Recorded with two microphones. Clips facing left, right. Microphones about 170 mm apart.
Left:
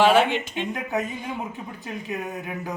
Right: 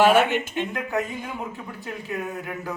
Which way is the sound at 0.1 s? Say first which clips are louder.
Even; 50° right (ahead or behind).